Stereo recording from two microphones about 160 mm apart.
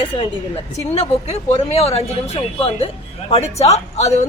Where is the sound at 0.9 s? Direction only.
40° left (ahead or behind).